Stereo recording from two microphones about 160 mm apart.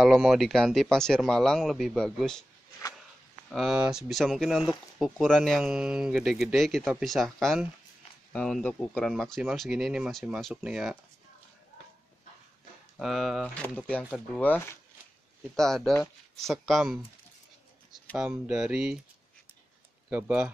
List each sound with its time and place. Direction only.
0.0 s speech: 5° right (ahead or behind)
3.4 s speech: centre (ahead or behind)
13.0 s speech: centre (ahead or behind)
18.1 s speech: 5° right (ahead or behind)
20.1 s speech: 10° right (ahead or behind)